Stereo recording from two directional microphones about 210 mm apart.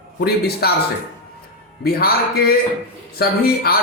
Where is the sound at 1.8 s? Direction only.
45° left (ahead or behind).